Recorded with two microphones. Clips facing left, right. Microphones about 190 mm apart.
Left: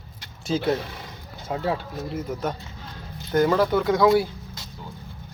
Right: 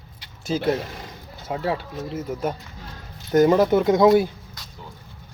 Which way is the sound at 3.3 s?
20° right (ahead or behind).